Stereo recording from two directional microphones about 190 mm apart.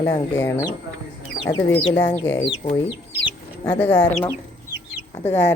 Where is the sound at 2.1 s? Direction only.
15° left (ahead or behind).